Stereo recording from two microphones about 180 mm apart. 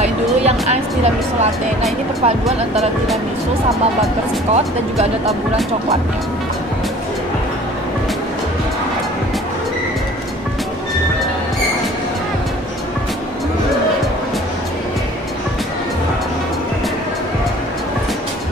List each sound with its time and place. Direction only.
0.0 s music: 40° right (ahead or behind)
2.2 s speech: 35° right (ahead or behind)